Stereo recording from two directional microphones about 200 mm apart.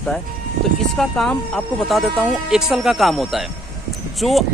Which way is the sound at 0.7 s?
Centre (ahead or behind).